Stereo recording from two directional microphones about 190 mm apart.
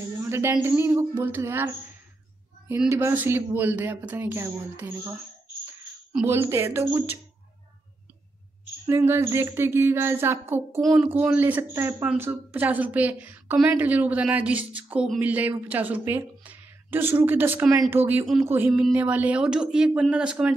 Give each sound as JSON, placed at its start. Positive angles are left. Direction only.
{"t": 0.2, "sound": "speech", "side_deg": -15}
{"t": 2.7, "sound": "speech", "side_deg": -10}
{"t": 6.1, "sound": "speech", "side_deg": -10}
{"t": 8.8, "sound": "speech", "side_deg": -15}
{"t": 10.8, "sound": "speech", "side_deg": 0}
{"t": 11.1, "sound": "a woman's voice", "side_deg": -10}